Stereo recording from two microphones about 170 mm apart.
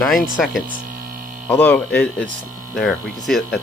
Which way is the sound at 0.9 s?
55° right (ahead or behind).